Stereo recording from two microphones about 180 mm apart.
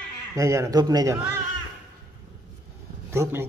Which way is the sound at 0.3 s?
15° right (ahead or behind).